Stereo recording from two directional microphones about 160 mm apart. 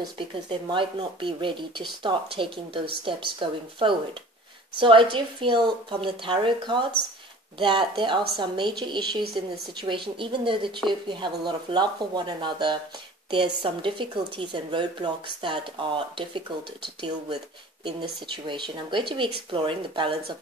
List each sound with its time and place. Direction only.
0.3 s a woman's voice: 30° right (ahead or behind)
9.2 s speech: 75° right (ahead or behind)
9.8 s a woman's voice: 30° right (ahead or behind)